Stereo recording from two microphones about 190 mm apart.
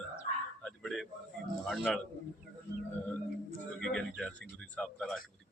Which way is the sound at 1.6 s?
Centre (ahead or behind).